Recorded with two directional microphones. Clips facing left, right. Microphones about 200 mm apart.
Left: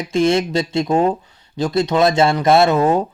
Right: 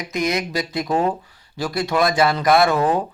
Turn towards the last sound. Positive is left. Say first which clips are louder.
# left 3 dB
turn(degrees=25)  # may be behind; listen again after turning